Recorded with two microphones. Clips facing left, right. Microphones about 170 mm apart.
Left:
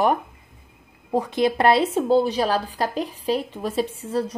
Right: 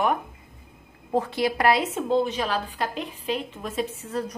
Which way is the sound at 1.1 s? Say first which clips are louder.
Left 3 dB; 15° left (ahead or behind).